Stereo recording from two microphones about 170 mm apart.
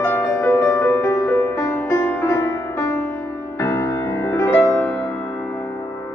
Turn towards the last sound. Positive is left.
turn(degrees=10)  # may be behind; listen again after turning